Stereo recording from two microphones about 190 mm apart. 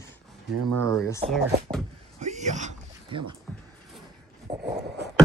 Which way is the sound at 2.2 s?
40° right (ahead or behind).